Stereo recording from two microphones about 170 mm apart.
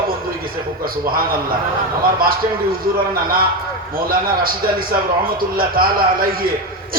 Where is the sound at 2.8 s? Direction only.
60° right (ahead or behind).